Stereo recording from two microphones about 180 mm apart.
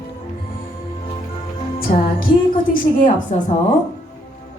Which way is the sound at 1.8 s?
55° left (ahead or behind).